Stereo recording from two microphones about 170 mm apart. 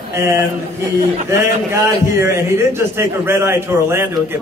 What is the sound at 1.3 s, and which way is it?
A man's voice, 15° right (ahead or behind).